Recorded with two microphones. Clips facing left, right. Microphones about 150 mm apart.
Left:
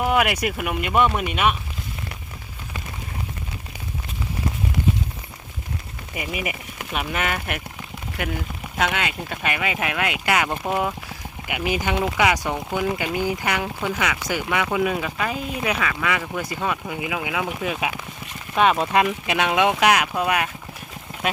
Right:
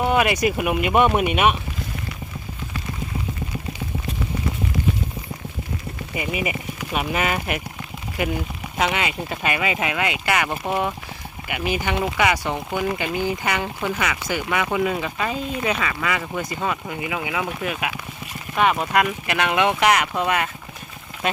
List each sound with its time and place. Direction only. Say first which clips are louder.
0.2 s speech: right 2 dB; centre (ahead or behind); by 1.5 s 15° right (ahead or behind)
6.1 s speech: right 3 dB; centre (ahead or behind)
8.8 s speech: right 1 dB; 5° right (ahead or behind)
10.2 s speech: left 2 dB; 10° left (ahead or behind)
14.3 s speech: right 1 dB; 10° left (ahead or behind)
17.6 s speech: left 1 dB; 20° left (ahead or behind)